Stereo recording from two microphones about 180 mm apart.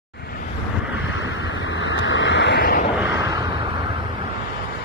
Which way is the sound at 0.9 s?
90° left.